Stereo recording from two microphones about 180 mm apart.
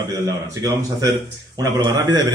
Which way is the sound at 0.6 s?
20° right (ahead or behind).